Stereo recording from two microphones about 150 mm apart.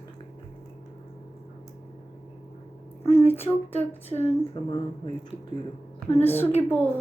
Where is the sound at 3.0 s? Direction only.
45° left (ahead or behind).